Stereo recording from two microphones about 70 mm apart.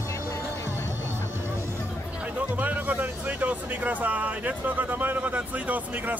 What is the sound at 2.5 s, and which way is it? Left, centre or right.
Speech, right.